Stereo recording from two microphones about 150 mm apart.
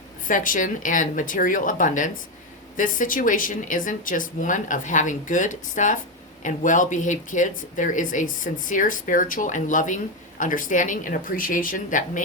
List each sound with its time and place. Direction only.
0.3 s speech: 65° left (ahead or behind)